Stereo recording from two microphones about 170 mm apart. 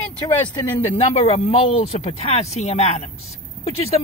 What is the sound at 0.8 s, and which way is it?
Speech, 35° left (ahead or behind).